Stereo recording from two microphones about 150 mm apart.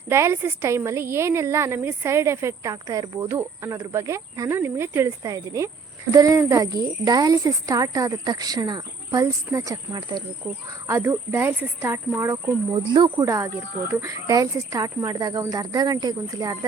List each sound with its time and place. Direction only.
0.1 s a woman's voice: 15° right (ahead or behind)